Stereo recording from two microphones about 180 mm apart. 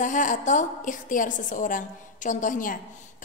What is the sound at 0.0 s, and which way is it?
A woman's voice, 45° left (ahead or behind).